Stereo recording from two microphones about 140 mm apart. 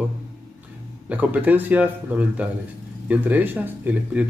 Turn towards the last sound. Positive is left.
turn(degrees=-10)  # may be behind; listen again after turning